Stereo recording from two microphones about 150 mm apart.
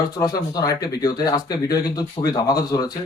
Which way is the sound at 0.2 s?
25° left (ahead or behind).